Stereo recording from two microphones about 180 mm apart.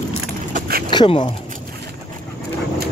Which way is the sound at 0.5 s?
55° right (ahead or behind).